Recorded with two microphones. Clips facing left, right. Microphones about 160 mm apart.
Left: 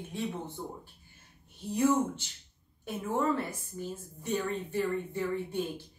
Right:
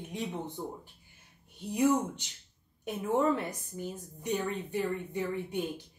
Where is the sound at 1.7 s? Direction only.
15° right (ahead or behind).